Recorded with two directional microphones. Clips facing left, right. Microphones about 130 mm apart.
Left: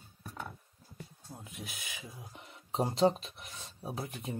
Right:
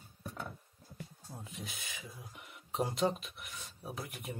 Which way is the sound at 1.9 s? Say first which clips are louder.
Left 1 dB; 25° left (ahead or behind).